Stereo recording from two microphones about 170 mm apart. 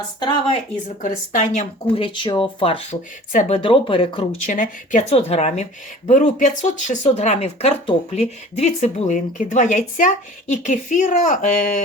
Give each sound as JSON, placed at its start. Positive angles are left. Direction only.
{"t": 0.2, "sound": "speech", "side_deg": 30}
{"t": 1.0, "sound": "speech", "side_deg": 50}
{"t": 1.9, "sound": "speech", "side_deg": 30}
{"t": 4.4, "sound": "speech", "side_deg": 50}